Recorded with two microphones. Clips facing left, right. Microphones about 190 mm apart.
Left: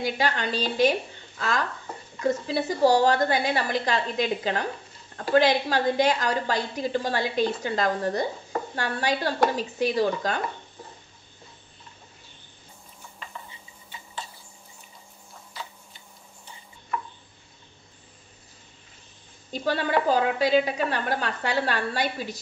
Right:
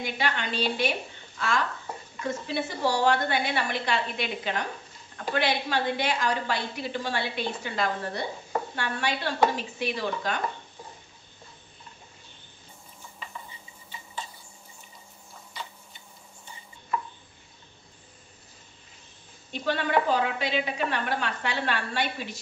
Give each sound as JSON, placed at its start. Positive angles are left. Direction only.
{"t": 0.0, "sound": "a woman's voice", "side_deg": 40}
{"t": 2.5, "sound": "a woman's voice", "side_deg": 40}
{"t": 19.5, "sound": "a woman's voice", "side_deg": 40}